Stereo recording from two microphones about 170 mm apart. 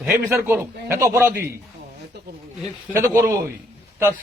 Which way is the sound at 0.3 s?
15° right (ahead or behind).